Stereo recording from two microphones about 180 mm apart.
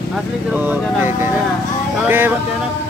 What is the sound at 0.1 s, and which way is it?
Speech, 10° right (ahead or behind).